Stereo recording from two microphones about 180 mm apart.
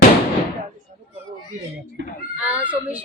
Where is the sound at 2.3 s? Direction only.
5° right (ahead or behind).